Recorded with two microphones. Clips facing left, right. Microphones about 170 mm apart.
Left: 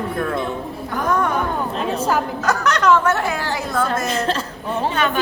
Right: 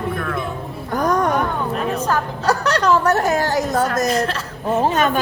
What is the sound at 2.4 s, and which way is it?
A woman's voice, 35° right (ahead or behind).